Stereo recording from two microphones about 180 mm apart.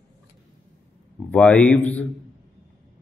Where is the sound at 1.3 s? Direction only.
10° left (ahead or behind).